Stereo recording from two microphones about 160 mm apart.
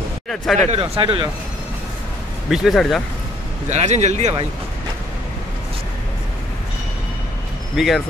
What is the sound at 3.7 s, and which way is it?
Speech, 45° right (ahead or behind).